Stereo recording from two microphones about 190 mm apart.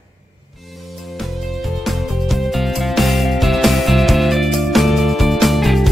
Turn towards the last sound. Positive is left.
turn(degrees=0)  # may be behind; listen again after turning